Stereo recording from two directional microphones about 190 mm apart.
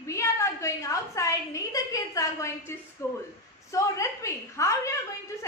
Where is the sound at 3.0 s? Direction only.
15° left (ahead or behind).